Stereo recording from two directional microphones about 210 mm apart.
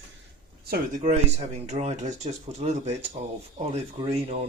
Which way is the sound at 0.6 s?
45° right (ahead or behind).